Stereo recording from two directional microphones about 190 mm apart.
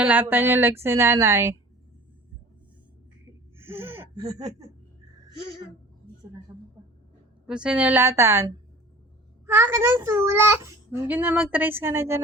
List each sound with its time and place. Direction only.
0.0 s a child's voice: 10° right (ahead or behind)
3.6 s gasp: 10° right (ahead or behind)
4.1 s speech: 20° right (ahead or behind)
6.5 s a woman's voice: 10° right (ahead or behind)
9.5 s a child's voice: 15° right (ahead or behind)